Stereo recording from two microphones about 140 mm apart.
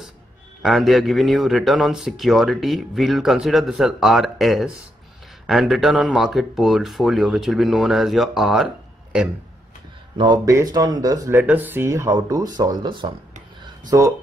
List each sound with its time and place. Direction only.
0.6 s a man's voice: centre (ahead or behind)
10.1 s speech: 30° right (ahead or behind)
11.3 s speech: 10° right (ahead or behind); by 13.1 s 35° right (ahead or behind)
13.7 s a sound: 25° right (ahead or behind)